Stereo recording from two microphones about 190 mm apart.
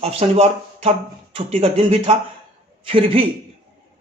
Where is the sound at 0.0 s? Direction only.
30° right (ahead or behind).